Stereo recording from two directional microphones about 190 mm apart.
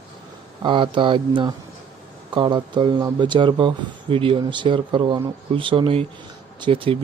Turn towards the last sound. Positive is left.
turn(degrees=-30)  # may be behind; listen again after turning